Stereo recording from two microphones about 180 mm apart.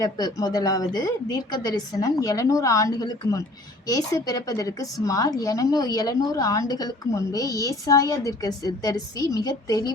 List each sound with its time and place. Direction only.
0.0 s a woman's voice: 20° left (ahead or behind)